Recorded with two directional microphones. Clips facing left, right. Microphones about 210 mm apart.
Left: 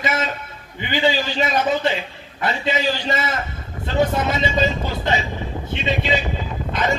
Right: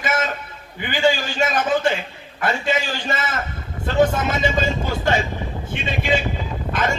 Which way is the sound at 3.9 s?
50° right (ahead or behind).